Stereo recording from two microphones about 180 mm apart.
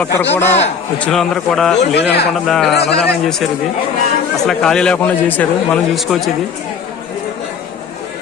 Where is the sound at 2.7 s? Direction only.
65° left (ahead or behind).